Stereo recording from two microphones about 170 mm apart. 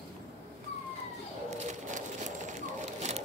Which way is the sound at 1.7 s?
45° right (ahead or behind).